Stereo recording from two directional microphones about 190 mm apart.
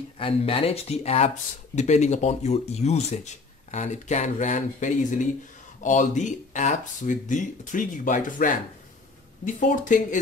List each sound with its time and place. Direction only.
0.2 s speech: 30° left (ahead or behind)